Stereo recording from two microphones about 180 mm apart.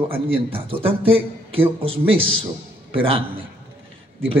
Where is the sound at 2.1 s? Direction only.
90° right.